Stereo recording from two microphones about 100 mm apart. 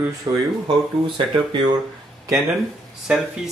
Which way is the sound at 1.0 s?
55° right (ahead or behind).